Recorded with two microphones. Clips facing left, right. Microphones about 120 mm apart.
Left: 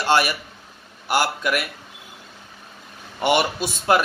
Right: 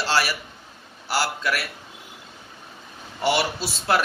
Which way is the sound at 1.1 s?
15° left (ahead or behind).